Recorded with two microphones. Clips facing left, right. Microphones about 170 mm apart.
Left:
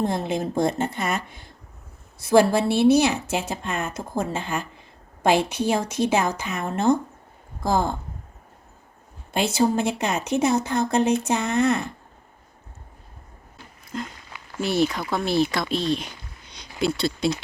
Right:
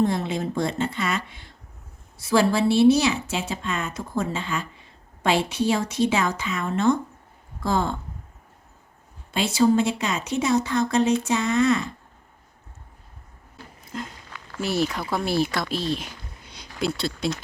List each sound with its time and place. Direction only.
0.3 s speech: 50° left (ahead or behind)
9.3 s speech: 50° left (ahead or behind)
13.9 s speech: centre (ahead or behind)